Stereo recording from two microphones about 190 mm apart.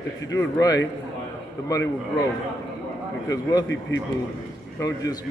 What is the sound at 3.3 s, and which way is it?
Speech, 20° left (ahead or behind).